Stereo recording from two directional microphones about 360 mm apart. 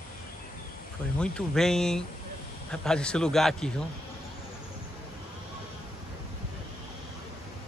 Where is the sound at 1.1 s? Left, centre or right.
Centre.